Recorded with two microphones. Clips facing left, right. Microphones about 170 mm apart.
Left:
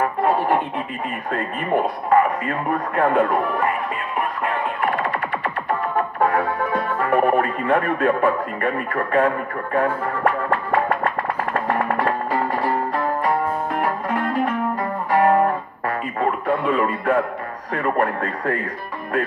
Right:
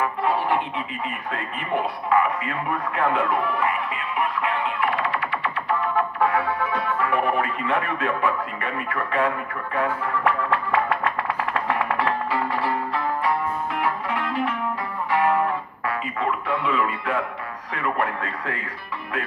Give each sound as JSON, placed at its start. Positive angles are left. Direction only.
{"t": 0.0, "sound": "a sound", "side_deg": 50}
{"t": 1.3, "sound": "speech", "side_deg": 50}
{"t": 4.2, "sound": "music", "side_deg": 45}
{"t": 17.7, "sound": "speech", "side_deg": 45}